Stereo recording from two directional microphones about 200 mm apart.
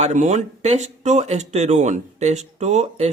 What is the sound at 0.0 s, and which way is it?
Speech, 35° right (ahead or behind).